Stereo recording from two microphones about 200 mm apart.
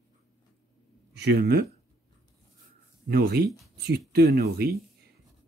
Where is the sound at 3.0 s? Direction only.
50° right (ahead or behind).